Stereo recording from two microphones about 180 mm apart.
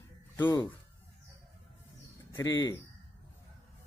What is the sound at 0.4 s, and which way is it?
Speech, 20° left (ahead or behind).